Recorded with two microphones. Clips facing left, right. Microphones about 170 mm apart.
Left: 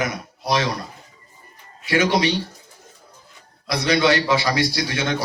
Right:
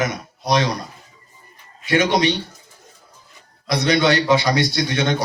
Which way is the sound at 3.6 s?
20° right (ahead or behind).